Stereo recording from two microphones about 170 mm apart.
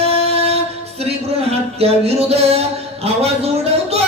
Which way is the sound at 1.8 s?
35° right (ahead or behind).